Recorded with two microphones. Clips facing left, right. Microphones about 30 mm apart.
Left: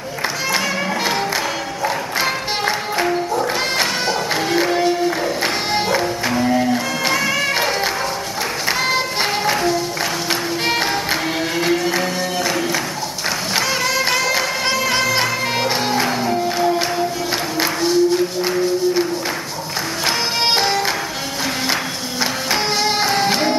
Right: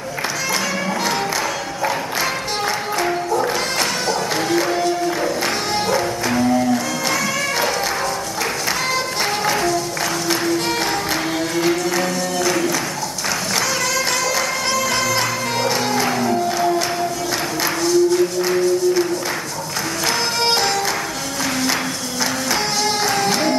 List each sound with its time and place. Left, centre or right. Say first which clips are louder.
4.1 s music: even; left
9.5 s music: left 1 dB; centre
11.5 s music: even; centre
13.9 s music: left 2 dB; left
22.5 s music: left 3 dB; left